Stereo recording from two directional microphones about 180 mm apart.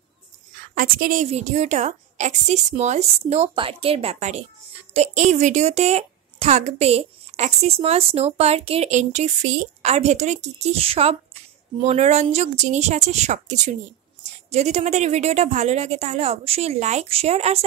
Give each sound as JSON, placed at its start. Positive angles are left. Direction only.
{"t": 0.6, "sound": "a woman's voice", "side_deg": -50}